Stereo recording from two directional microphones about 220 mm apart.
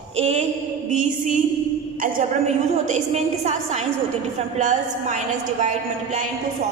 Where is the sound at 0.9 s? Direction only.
35° right (ahead or behind).